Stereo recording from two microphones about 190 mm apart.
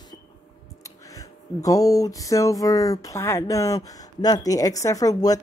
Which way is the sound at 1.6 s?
20° left (ahead or behind).